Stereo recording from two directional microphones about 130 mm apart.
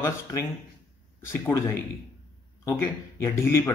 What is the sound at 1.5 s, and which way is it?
Speech, 30° left (ahead or behind).